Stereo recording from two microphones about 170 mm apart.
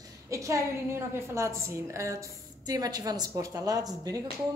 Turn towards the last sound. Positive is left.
turn(degrees=-20)  # may be behind; listen again after turning